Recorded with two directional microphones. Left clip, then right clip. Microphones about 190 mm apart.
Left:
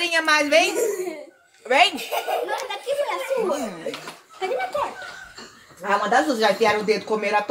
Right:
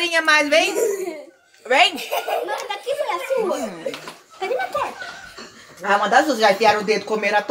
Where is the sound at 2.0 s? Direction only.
50° right (ahead or behind).